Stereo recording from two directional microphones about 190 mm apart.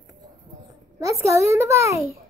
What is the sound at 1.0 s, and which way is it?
A child's voice, 15° right (ahead or behind).